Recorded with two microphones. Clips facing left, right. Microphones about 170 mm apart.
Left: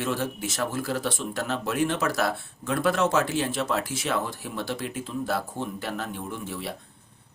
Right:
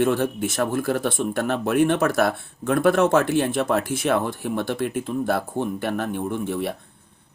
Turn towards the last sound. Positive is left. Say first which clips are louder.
# right 8 dB
turn(degrees=-55)  # may be behind; listen again after turning